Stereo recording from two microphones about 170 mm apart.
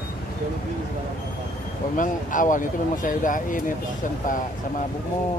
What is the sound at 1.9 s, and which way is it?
Speech, 50° left (ahead or behind).